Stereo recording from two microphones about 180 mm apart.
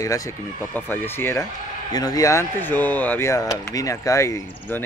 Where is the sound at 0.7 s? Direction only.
10° left (ahead or behind).